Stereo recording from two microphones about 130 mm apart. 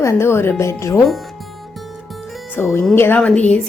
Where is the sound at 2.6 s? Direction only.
20° left (ahead or behind).